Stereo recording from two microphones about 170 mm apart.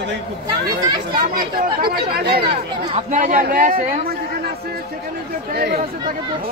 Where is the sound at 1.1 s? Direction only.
60° right (ahead or behind).